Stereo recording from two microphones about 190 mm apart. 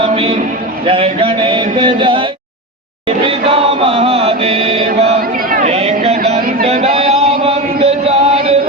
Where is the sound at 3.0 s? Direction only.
30° right (ahead or behind).